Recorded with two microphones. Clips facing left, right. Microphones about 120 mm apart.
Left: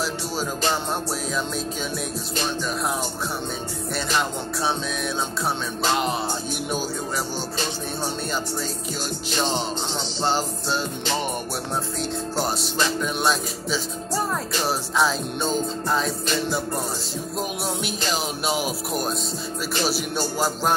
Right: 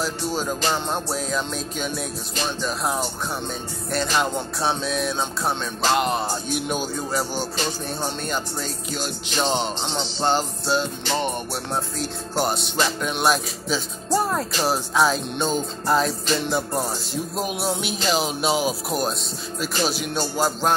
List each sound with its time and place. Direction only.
0.0 s music: 5° left (ahead or behind)
4.1 s music: centre (ahead or behind)
10.2 s music: 5° left (ahead or behind)
12.0 s music: centre (ahead or behind)
17.8 s music: centre (ahead or behind)
18.7 s speech: 30° right (ahead or behind)
19.6 s music: 5° left (ahead or behind)